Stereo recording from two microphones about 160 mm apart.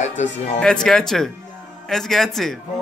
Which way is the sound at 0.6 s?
5° left (ahead or behind).